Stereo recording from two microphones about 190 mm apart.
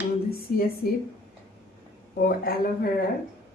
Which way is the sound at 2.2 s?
50° left (ahead or behind).